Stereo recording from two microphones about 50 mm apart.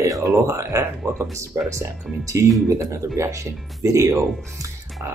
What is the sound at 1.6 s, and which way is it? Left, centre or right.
Speech, right.